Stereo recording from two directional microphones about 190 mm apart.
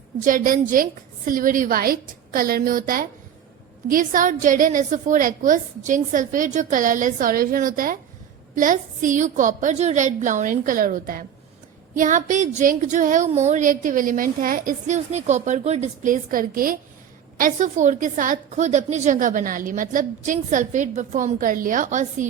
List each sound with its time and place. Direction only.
0.3 s a woman's voice: 45° right (ahead or behind)